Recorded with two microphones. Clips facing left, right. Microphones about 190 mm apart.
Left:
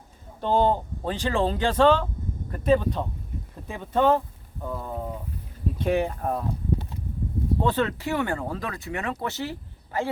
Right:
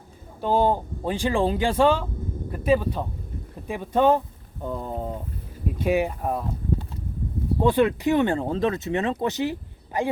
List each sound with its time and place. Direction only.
0.4 s speech: 10° right (ahead or behind); by 5.1 s 25° right (ahead or behind)
5.8 s speech: 10° right (ahead or behind)
7.6 s speech: 15° right (ahead or behind)